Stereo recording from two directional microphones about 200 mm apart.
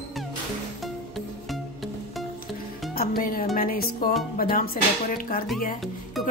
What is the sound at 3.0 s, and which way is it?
Speech, 45° left (ahead or behind).